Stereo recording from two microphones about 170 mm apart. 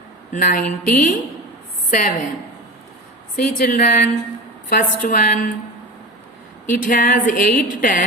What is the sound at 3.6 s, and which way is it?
A woman's voice, 55° left (ahead or behind).